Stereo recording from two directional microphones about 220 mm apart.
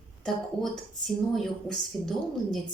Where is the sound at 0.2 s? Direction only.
Centre (ahead or behind).